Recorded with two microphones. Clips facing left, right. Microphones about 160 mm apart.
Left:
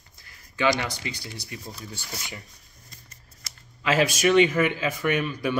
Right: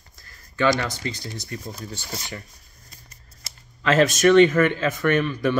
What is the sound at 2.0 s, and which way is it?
Speech, 30° right (ahead or behind).